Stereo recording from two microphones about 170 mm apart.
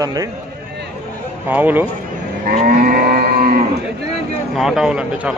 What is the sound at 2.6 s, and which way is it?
Moo, 55° right (ahead or behind).